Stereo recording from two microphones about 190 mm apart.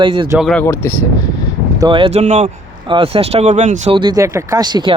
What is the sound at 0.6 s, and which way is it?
Speech, 15° left (ahead or behind).